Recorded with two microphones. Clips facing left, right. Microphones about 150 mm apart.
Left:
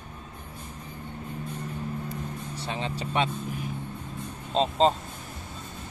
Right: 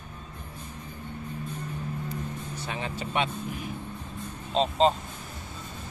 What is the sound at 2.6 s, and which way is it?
Vehicle, 30° left (ahead or behind).